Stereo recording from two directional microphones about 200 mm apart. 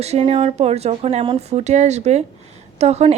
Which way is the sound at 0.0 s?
30° right (ahead or behind).